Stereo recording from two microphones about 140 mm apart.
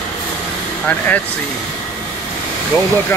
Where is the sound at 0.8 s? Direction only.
10° left (ahead or behind).